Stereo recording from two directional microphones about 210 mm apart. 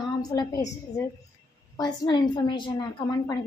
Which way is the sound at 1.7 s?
20° left (ahead or behind).